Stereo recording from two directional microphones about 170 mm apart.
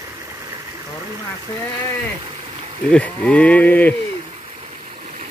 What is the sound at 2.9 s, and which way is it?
Speech, 5° left (ahead or behind).